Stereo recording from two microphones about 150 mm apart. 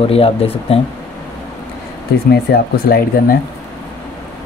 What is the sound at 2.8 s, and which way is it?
Speech, 80° left.